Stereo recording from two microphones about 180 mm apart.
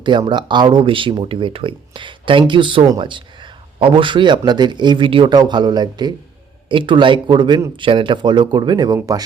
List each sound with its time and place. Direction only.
0.0 s a man's voice: 25° right (ahead or behind)